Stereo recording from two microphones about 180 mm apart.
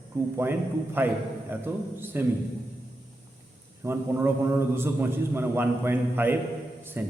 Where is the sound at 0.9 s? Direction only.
10° right (ahead or behind).